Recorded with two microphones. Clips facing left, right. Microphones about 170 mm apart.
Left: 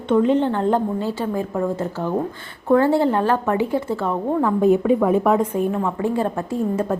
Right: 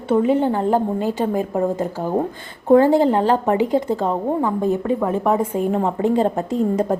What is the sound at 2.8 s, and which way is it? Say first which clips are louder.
A woman's voice: right 3 dB; 15° right (ahead or behind).